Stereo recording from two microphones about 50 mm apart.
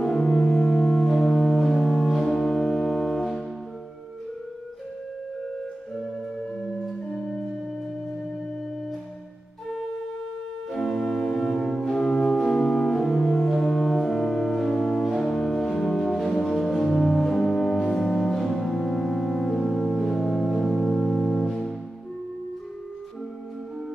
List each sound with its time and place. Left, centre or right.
0.0 s music: centre
6.6 s music: centre
10.7 s organ: centre
11.7 s music: centre